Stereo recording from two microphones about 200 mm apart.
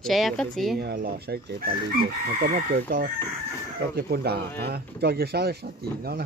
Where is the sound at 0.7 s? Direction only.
50° right (ahead or behind).